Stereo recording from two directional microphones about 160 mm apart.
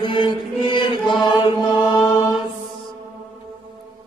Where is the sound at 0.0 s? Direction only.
30° left (ahead or behind).